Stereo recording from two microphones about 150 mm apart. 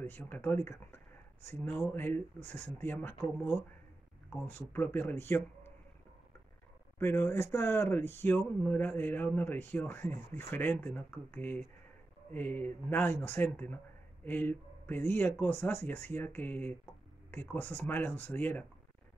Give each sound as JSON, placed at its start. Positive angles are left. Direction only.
{"t": 0.0, "sound": "speech", "side_deg": 10}
{"t": 7.0, "sound": "speech", "side_deg": 15}